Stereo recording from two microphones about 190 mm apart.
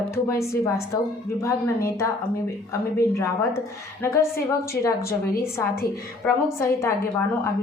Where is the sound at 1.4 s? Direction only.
15° left (ahead or behind).